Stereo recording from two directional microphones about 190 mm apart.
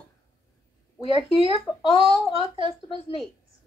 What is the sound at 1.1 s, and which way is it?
Speech, 30° left (ahead or behind).